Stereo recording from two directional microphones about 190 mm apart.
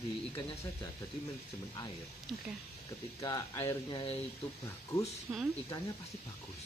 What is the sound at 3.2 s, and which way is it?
Speech, 20° left (ahead or behind).